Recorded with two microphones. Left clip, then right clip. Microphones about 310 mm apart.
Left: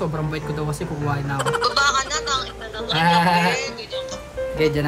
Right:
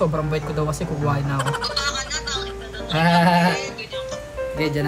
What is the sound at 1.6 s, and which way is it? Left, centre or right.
Music, centre.